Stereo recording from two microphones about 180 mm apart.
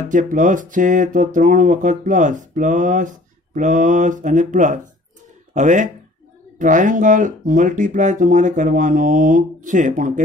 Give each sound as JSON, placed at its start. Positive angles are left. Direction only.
{"t": 0.1, "sound": "speech", "side_deg": -45}